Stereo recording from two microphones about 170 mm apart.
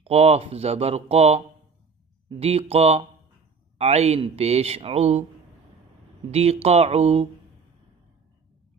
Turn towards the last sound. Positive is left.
turn(degrees=-35)  # may be behind; listen again after turning